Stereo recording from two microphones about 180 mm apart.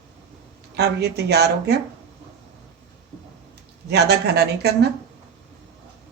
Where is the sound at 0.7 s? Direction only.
65° right (ahead or behind).